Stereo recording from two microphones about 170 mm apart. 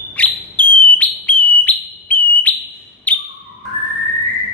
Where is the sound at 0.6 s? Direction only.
30° right (ahead or behind).